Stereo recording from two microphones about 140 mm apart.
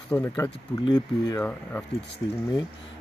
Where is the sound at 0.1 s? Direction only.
20° left (ahead or behind).